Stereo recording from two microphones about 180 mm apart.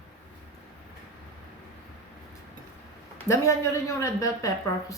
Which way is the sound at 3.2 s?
15° left (ahead or behind).